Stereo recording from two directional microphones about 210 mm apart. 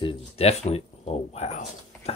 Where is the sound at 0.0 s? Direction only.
25° left (ahead or behind).